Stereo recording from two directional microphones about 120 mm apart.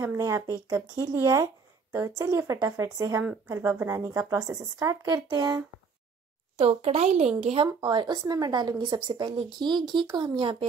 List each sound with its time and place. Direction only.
0.2 s speech: 25° right (ahead or behind)
6.6 s speech: 55° right (ahead or behind)
7.6 s speech: 40° right (ahead or behind)